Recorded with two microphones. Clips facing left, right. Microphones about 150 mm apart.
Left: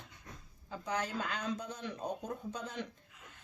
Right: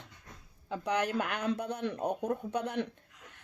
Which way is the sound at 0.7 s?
70° right (ahead or behind).